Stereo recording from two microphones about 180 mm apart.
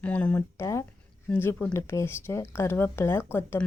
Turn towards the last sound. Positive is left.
turn(degrees=15)  # may be behind; listen again after turning